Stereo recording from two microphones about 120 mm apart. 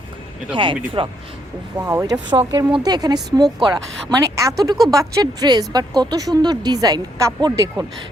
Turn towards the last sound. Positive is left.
turn(degrees=-25)  # may be behind; listen again after turning